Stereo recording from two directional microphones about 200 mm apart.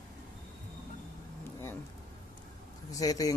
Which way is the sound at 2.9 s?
20° left (ahead or behind).